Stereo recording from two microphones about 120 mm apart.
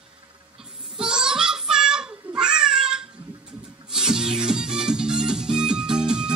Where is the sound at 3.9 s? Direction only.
5° right (ahead or behind).